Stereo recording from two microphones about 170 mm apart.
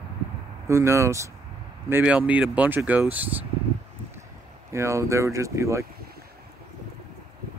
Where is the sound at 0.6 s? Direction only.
15° right (ahead or behind).